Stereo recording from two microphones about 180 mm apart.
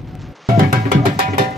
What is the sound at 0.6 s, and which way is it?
Music, 50° right (ahead or behind).